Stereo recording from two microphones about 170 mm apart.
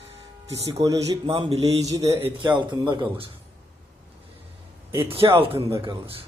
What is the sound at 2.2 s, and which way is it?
Speech, 30° right (ahead or behind).